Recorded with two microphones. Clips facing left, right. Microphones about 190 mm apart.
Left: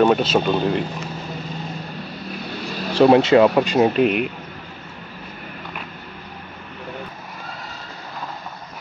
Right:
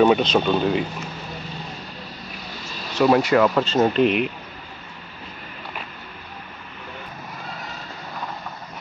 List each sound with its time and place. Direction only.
0.0 s speech: 5° left (ahead or behind)
2.9 s speech: 25° left (ahead or behind); by 4.3 s 5° left (ahead or behind)